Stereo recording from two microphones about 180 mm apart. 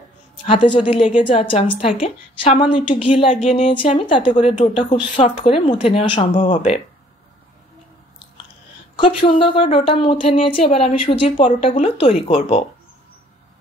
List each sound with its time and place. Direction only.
0.5 s a woman's voice: 30° left (ahead or behind)
6.5 s speech: 45° left (ahead or behind)
8.9 s a woman's voice: 30° left (ahead or behind)